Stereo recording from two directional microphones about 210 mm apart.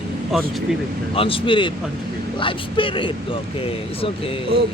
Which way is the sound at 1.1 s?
25° left (ahead or behind).